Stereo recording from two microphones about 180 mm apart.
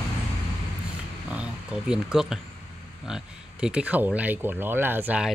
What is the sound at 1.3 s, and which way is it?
Speech, 5° right (ahead or behind).